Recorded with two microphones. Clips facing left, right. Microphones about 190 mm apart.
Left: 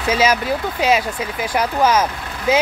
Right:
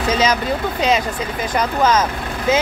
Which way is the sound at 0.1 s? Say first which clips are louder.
Left 2 dB; 10° left (ahead or behind).